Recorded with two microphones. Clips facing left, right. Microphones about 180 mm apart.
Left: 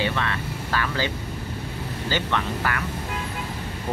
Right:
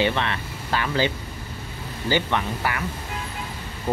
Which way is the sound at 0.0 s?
25° right (ahead or behind).